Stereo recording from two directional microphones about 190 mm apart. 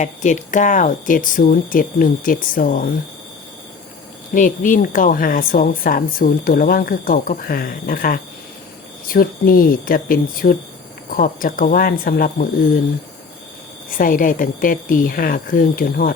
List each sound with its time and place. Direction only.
0.0 s a woman's voice: 40° left (ahead or behind)
4.4 s a woman's voice: 45° left (ahead or behind)
13.9 s a woman's voice: 45° left (ahead or behind)